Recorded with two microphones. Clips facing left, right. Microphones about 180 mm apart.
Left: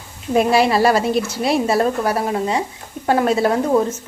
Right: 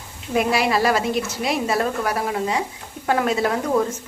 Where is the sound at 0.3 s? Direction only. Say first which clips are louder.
Left 5 dB; 30° left (ahead or behind).